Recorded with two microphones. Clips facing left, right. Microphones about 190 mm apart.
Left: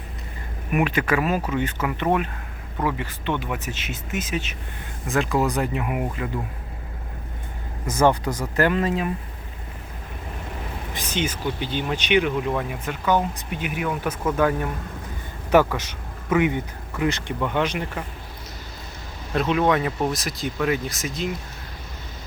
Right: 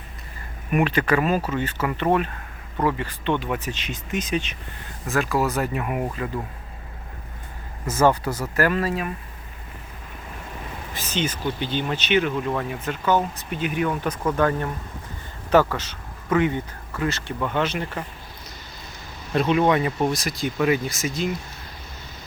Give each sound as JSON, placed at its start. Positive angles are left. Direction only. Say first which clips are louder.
{"t": 0.7, "sound": "speech", "louder": "right 1 dB", "side_deg": 10}
{"t": 5.0, "sound": "speech", "louder": "left 1 dB", "side_deg": 20}
{"t": 7.9, "sound": "speech", "louder": "even", "side_deg": 15}
{"t": 10.9, "sound": "a man's voice", "louder": "even", "side_deg": 10}
{"t": 19.3, "sound": "speech", "louder": "right 1 dB", "side_deg": 0}